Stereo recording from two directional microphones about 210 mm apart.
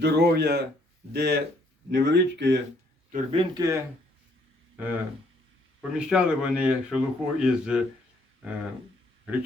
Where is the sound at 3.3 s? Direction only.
20° right (ahead or behind).